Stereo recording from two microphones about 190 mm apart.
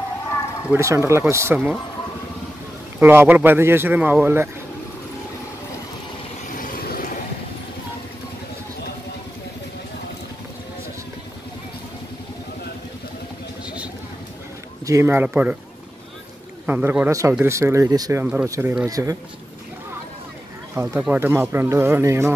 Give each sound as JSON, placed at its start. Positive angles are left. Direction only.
{"t": 0.7, "sound": "speech", "side_deg": -15}
{"t": 3.0, "sound": "speech", "side_deg": -10}
{"t": 6.5, "sound": "vehicle", "side_deg": 45}
{"t": 14.9, "sound": "speech", "side_deg": -15}
{"t": 16.6, "sound": "speech", "side_deg": -10}
{"t": 18.2, "sound": "speech", "side_deg": -5}
{"t": 20.7, "sound": "speech", "side_deg": -10}